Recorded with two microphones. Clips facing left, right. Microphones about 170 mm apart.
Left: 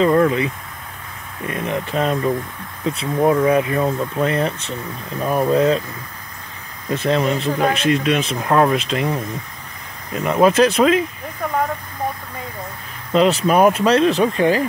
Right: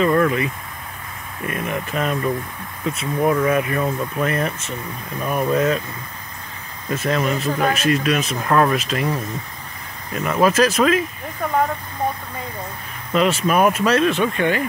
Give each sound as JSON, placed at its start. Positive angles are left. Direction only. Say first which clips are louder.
{"t": 0.0, "sound": "speech", "louder": "left 2 dB", "side_deg": 20}
{"t": 1.5, "sound": "speech", "louder": "left 3 dB", "side_deg": 30}
{"t": 6.9, "sound": "speech", "louder": "left 2 dB", "side_deg": 25}
{"t": 13.1, "sound": "speech", "louder": "left 3 dB", "side_deg": 30}